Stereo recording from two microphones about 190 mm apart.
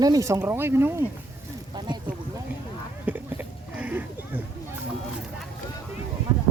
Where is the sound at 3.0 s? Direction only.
10° right (ahead or behind).